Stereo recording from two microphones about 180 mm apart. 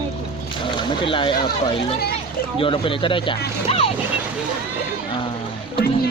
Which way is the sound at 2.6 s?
30° left (ahead or behind).